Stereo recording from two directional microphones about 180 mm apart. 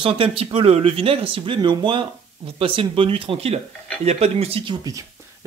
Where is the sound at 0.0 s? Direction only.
30° right (ahead or behind).